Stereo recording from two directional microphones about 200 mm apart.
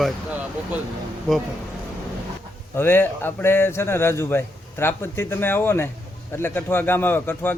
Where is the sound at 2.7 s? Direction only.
10° left (ahead or behind).